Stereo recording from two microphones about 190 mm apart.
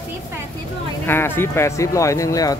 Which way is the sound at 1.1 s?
10° left (ahead or behind).